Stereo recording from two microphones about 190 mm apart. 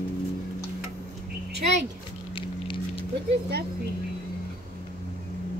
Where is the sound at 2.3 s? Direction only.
25° left (ahead or behind).